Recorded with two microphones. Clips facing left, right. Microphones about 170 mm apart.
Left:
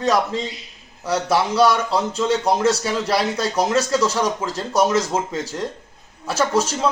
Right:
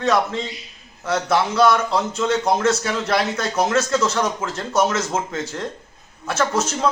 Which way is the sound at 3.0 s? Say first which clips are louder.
Even; 10° left (ahead or behind).